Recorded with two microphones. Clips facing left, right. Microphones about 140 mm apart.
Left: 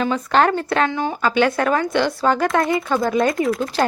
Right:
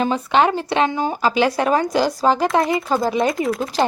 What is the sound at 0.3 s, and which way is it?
A woman's voice, 10° right (ahead or behind).